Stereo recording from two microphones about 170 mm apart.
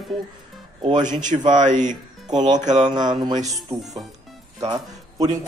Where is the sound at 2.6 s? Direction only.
45° right (ahead or behind).